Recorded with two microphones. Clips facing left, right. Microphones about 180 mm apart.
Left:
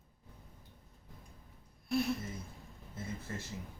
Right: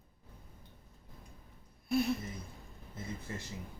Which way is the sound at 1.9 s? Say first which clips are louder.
Right 2 dB; centre (ahead or behind).